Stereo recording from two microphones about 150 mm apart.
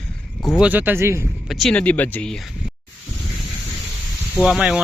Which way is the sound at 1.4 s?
Centre (ahead or behind).